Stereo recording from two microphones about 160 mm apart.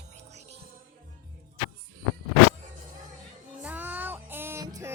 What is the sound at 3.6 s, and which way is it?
Music, 10° right (ahead or behind).